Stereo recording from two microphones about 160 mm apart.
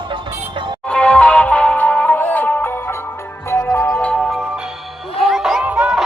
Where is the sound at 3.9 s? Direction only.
5° left (ahead or behind).